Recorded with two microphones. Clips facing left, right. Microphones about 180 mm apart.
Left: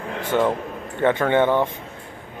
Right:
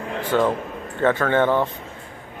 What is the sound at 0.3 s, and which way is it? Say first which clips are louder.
Speech: even; 15° left (ahead or behind).